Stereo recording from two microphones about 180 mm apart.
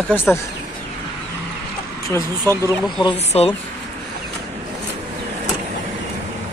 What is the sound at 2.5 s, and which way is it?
Speech, 20° left (ahead or behind).